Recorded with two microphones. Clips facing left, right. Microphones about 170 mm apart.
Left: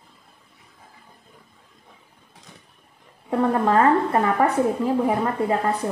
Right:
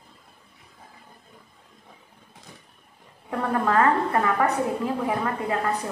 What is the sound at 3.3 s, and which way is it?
A woman's voice, 25° left (ahead or behind).